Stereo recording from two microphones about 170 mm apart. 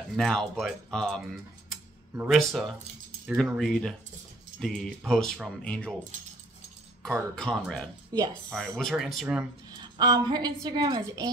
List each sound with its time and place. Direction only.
0.1 s speech: centre (ahead or behind)
7.0 s speech: 5° left (ahead or behind)
8.1 s speech: 25° right (ahead or behind)
8.5 s speech: 5° left (ahead or behind)
9.8 s a woman's voice: 25° right (ahead or behind)